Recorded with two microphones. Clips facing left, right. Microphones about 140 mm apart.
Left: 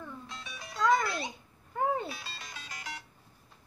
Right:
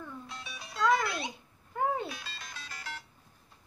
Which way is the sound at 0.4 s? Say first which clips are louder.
Even; 5° right (ahead or behind).